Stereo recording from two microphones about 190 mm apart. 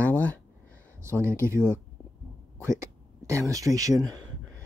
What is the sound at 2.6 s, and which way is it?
Speech, 15° right (ahead or behind).